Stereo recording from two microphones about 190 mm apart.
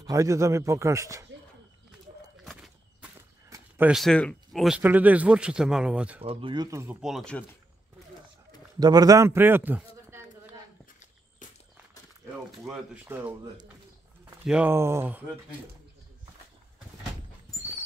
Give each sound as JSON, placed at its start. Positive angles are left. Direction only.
{"t": 0.0, "sound": "speech", "side_deg": -15}
{"t": 2.4, "sound": "a sound", "side_deg": 0}
{"t": 3.4, "sound": "speech", "side_deg": -15}
{"t": 6.2, "sound": "speech", "side_deg": -25}
{"t": 7.0, "sound": "speech", "side_deg": 0}
{"t": 8.7, "sound": "a man's voice", "side_deg": -20}
{"t": 12.4, "sound": "speech", "side_deg": -5}
{"t": 14.3, "sound": "speech", "side_deg": -5}